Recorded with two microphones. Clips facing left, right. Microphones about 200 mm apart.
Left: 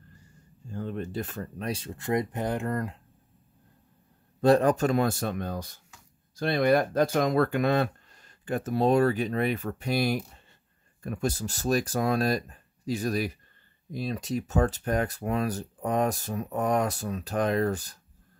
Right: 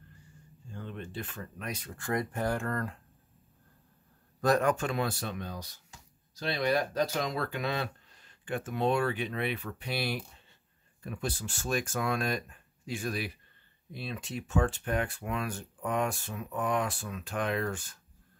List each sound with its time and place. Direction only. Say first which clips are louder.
0.7 s speech: left 8 dB; 40° left (ahead or behind); by 3.0 s 20° left (ahead or behind)
4.4 s speech: left 6 dB; 30° left (ahead or behind)